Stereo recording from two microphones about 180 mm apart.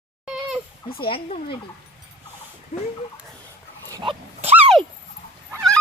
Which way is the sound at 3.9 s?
20° right (ahead or behind).